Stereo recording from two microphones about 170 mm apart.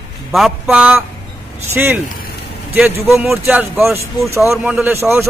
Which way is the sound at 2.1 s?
60° left (ahead or behind).